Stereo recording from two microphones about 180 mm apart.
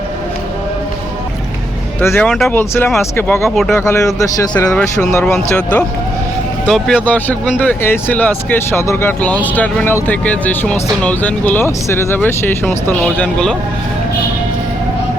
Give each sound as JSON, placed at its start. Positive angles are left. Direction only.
{"t": 2.0, "sound": "speech", "side_deg": 10}
{"t": 2.6, "sound": "speech", "side_deg": 10}
{"t": 3.5, "sound": "speech", "side_deg": 0}
{"t": 3.8, "sound": "speech", "side_deg": 15}
{"t": 4.7, "sound": "speech", "side_deg": 5}